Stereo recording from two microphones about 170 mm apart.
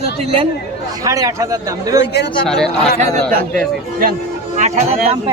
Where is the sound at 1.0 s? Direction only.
20° right (ahead or behind).